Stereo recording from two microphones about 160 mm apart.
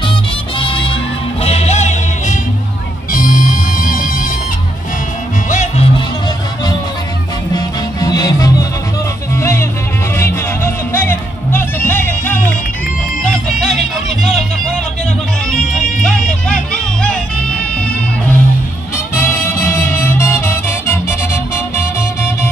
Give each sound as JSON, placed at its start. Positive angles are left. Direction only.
{"t": 0.6, "sound": "music", "side_deg": 35}
{"t": 3.1, "sound": "music", "side_deg": 60}
{"t": 5.5, "sound": "music", "side_deg": 45}
{"t": 7.5, "sound": "music", "side_deg": 25}
{"t": 13.2, "sound": "music", "side_deg": 5}
{"t": 15.5, "sound": "music", "side_deg": 5}
{"t": 19.1, "sound": "music", "side_deg": 15}